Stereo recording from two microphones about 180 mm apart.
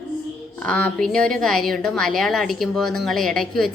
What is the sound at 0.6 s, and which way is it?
A woman's voice, 5° left (ahead or behind).